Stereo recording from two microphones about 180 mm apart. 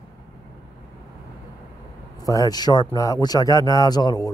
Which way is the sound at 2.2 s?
20° left (ahead or behind).